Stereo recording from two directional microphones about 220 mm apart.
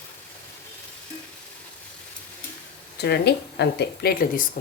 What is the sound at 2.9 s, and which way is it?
Speech, 50° left (ahead or behind).